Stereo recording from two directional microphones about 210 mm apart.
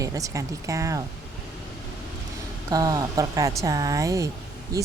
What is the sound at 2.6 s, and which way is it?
Speech, 15° right (ahead or behind).